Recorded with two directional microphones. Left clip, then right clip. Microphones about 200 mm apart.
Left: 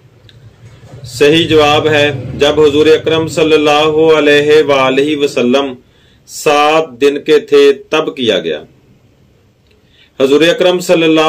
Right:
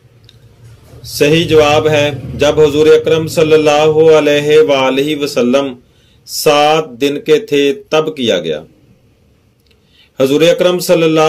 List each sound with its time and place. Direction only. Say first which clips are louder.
1.1 s a man's voice: left 1 dB; 50° right (ahead or behind)
10.1 s a man's voice: left 1 dB; 50° right (ahead or behind)